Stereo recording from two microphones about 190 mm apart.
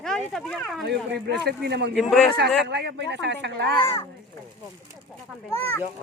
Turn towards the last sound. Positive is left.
turn(degrees=10)  # may be behind; listen again after turning